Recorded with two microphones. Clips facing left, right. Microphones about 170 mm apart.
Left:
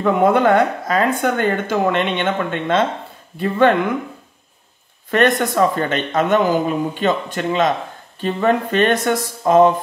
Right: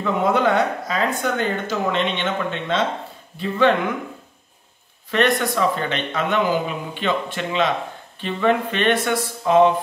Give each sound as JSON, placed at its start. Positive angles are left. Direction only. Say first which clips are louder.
{"t": 0.0, "sound": "speech", "louder": "left 5 dB", "side_deg": 55}
{"t": 5.1, "sound": "speech", "louder": "left 4 dB", "side_deg": 45}